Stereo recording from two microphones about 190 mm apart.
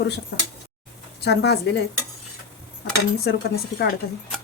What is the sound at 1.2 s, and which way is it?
Speech, 60° left (ahead or behind).